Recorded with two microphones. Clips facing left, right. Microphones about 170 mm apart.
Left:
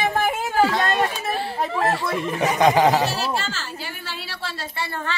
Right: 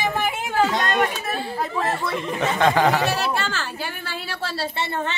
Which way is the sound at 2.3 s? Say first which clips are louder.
Left 2 dB; 15° left (ahead or behind).